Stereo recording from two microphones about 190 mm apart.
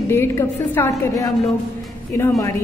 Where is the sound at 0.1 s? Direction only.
10° left (ahead or behind).